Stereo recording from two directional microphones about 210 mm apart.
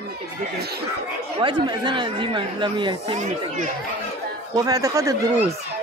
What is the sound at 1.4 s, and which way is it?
Speech, 20° right (ahead or behind).